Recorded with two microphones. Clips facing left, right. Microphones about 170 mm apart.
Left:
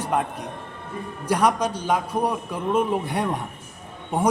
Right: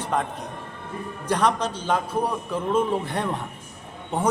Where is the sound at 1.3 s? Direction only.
10° left (ahead or behind).